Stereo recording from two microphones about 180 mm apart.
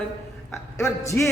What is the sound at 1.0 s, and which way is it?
Speech, 15° left (ahead or behind).